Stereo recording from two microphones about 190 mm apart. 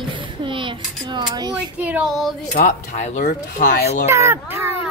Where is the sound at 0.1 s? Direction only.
25° right (ahead or behind).